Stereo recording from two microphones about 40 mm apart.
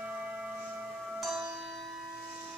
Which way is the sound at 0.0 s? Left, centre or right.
Right.